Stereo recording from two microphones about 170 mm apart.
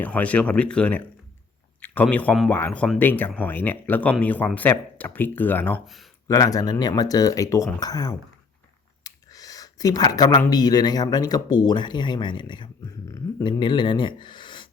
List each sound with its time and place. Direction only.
0.0 s speech: 10° left (ahead or behind)
5.8 s speech: centre (ahead or behind)
6.2 s speech: 20° left (ahead or behind)
9.0 s a sound: 20° left (ahead or behind)
10.5 s speech: 25° left (ahead or behind)